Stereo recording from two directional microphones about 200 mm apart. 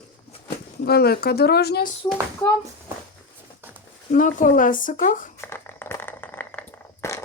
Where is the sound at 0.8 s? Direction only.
50° left (ahead or behind).